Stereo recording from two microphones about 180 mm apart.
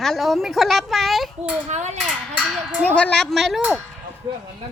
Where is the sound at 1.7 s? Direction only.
40° right (ahead or behind).